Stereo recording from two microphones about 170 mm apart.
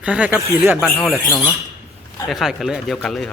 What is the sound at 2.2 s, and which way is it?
Speech, centre (ahead or behind).